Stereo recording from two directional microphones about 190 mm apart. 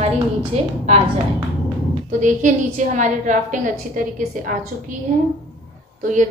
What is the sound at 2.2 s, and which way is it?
A woman's voice, 40° right (ahead or behind).